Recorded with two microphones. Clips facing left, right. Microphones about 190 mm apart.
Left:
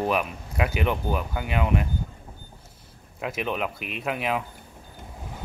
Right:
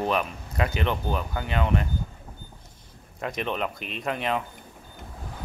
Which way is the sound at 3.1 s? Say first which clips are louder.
Left 1 dB; 5° left (ahead or behind).